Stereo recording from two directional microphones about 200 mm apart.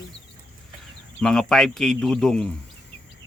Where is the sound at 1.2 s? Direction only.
Centre (ahead or behind).